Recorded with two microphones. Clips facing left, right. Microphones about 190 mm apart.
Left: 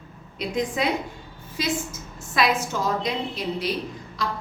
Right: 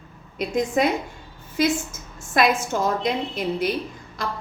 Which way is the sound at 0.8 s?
50° right (ahead or behind).